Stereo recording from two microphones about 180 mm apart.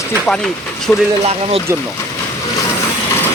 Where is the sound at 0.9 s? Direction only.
5° left (ahead or behind).